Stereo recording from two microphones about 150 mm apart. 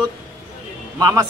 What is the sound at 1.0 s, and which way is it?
Speech, 25° right (ahead or behind).